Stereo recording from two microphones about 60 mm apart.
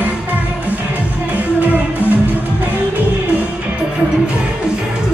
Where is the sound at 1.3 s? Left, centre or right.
Right.